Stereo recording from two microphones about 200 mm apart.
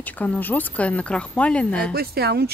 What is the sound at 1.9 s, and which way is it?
Speech, 50° right (ahead or behind).